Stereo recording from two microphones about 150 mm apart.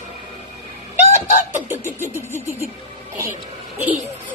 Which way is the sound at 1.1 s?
55° left (ahead or behind).